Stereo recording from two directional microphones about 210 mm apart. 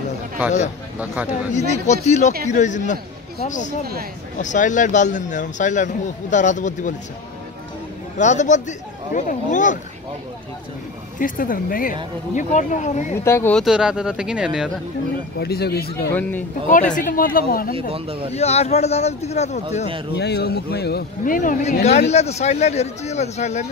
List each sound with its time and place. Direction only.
0.9 s speech: 5° right (ahead or behind)
1.5 s speech: 35° left (ahead or behind)
8.2 s speech: 35° left (ahead or behind)
11.1 s speech: 40° left (ahead or behind)
13.2 s speech: 10° left (ahead or behind); by 14.7 s 5° right (ahead or behind)
15.3 s speech: 50° left (ahead or behind)
16.1 s speech: 10° left (ahead or behind)
16.7 s speech: 40° left (ahead or behind)
17.7 s speech: 25° right (ahead or behind)
18.3 s speech: 30° left (ahead or behind)
20.2 s speech: 50° left (ahead or behind); by 23.6 s 30° left (ahead or behind)